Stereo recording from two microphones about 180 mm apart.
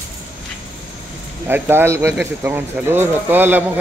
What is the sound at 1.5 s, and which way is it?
Speech, 10° right (ahead or behind).